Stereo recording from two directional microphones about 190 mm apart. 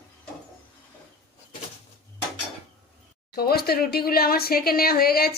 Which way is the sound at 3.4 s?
55° left (ahead or behind).